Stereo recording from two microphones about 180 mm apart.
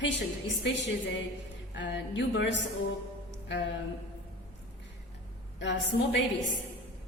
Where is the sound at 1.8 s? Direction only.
75° left (ahead or behind).